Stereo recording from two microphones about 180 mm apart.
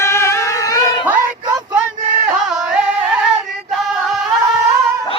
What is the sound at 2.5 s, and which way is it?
Music, 5° right (ahead or behind).